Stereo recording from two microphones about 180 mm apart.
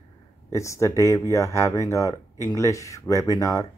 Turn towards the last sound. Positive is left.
turn(degrees=20)  # may be behind; listen again after turning